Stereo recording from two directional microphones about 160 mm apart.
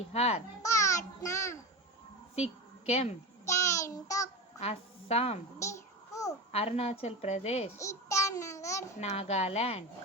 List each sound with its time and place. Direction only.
0.0 s a woman's voice: 40° left (ahead or behind)
0.6 s a sound: 20° left (ahead or behind)
2.3 s a woman's voice: 40° left (ahead or behind)
3.4 s child singing: 20° left (ahead or behind)
4.5 s a woman's voice: 40° left (ahead or behind)
6.5 s a woman's voice: 40° left (ahead or behind)
7.8 s child singing: 20° left (ahead or behind)
9.0 s a woman's voice: 45° left (ahead or behind)